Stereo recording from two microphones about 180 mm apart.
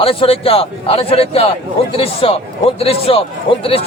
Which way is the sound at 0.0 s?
30° left (ahead or behind).